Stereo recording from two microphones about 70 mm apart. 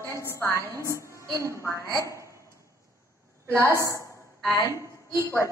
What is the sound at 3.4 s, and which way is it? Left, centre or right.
A woman's voice, right.